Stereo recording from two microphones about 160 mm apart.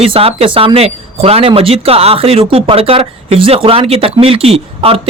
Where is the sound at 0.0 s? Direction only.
35° right (ahead or behind).